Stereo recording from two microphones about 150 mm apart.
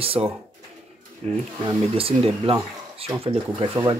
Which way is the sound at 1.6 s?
40° right (ahead or behind).